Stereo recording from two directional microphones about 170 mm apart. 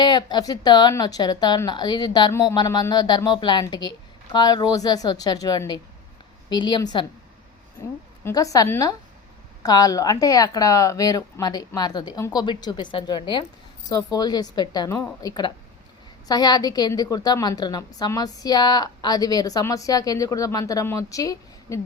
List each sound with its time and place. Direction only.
0.0 s a woman's voice: 25° left (ahead or behind)